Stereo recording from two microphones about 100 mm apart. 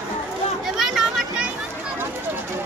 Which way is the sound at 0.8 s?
5° right (ahead or behind).